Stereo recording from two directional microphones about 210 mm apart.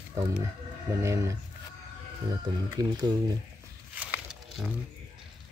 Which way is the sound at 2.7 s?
20° right (ahead or behind).